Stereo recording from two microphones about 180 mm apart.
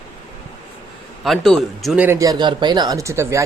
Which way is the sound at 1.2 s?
Centre (ahead or behind).